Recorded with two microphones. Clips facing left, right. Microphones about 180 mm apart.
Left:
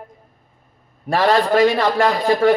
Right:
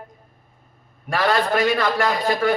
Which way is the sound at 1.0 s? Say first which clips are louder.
Left 4 dB; 35° left (ahead or behind).